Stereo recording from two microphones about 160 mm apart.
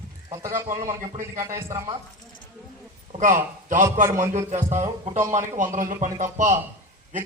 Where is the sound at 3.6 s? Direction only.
55° right (ahead or behind).